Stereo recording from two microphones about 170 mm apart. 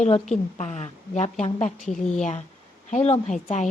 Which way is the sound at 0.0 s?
40° left (ahead or behind).